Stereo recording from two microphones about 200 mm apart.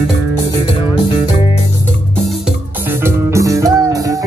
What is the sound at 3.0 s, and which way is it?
Music, 15° right (ahead or behind).